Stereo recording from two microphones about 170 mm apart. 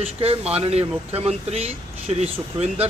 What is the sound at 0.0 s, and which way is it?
Speech, 35° right (ahead or behind).